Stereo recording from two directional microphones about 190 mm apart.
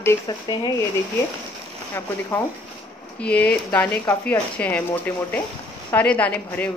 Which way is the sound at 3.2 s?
5° left (ahead or behind).